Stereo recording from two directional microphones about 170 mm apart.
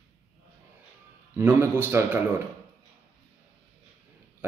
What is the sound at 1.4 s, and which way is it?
Speech, 15° right (ahead or behind).